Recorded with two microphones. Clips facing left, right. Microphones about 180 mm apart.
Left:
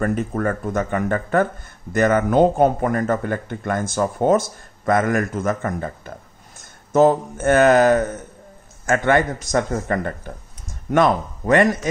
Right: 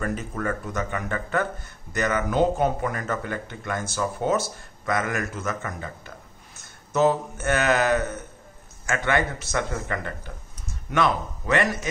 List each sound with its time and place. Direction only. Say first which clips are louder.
0.0 s a man's voice: left 7 dB; 50° left (ahead or behind)